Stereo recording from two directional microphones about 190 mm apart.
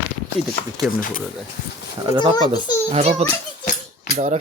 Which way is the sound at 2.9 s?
35° right (ahead or behind).